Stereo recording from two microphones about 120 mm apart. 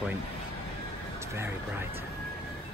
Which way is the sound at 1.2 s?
20° right (ahead or behind).